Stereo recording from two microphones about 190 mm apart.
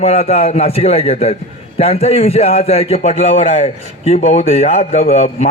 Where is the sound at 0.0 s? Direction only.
35° left (ahead or behind).